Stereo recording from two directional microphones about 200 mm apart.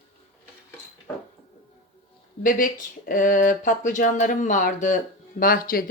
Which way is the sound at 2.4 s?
40° left (ahead or behind).